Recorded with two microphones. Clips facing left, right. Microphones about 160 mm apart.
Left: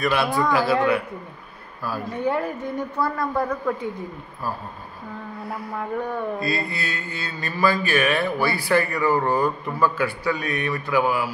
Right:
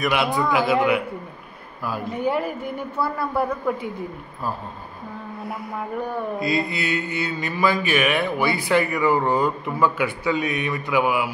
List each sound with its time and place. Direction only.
0.0 s a woman's voice: 20° right (ahead or behind)
5.8 s mantra: 15° right (ahead or behind)